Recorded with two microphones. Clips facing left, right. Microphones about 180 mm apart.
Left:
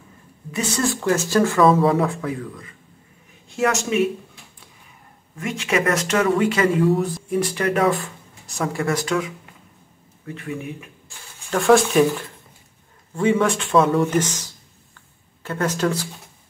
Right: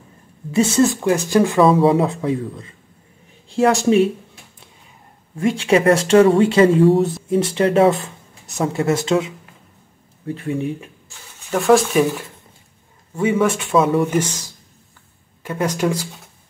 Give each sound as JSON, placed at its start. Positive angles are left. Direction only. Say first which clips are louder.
{"t": 0.5, "sound": "speech", "louder": "right 8 dB", "side_deg": -25}
{"t": 5.4, "sound": "speech", "louder": "right 7 dB", "side_deg": -30}
{"t": 11.5, "sound": "speech", "louder": "right 1 dB", "side_deg": 0}
{"t": 13.1, "sound": "speech", "louder": "right 1 dB", "side_deg": -5}